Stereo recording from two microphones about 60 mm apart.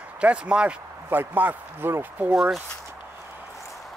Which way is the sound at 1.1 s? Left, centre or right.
Right.